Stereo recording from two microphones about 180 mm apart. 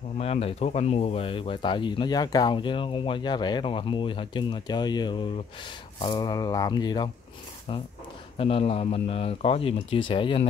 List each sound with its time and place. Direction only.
0.2 s speech: 35° left (ahead or behind)
8.4 s a man's voice: 30° left (ahead or behind)